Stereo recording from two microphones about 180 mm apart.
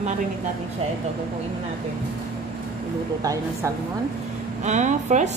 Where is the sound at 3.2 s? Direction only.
20° right (ahead or behind).